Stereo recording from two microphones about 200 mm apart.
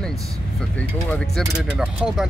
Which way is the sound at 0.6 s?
5° left (ahead or behind).